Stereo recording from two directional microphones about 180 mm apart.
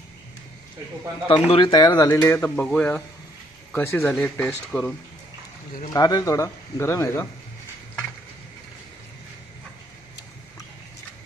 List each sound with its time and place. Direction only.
1.3 s speech: 25° left (ahead or behind); by 4.9 s 5° left (ahead or behind)
5.9 s speech: 20° left (ahead or behind)